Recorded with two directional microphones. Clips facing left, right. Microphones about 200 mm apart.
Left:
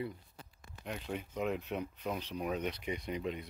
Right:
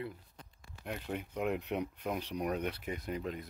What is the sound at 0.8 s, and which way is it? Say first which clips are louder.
Speech: right 1 dB; 5° right (ahead or behind).